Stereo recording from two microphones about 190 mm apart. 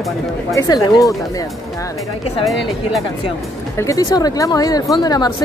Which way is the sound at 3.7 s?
15° left (ahead or behind).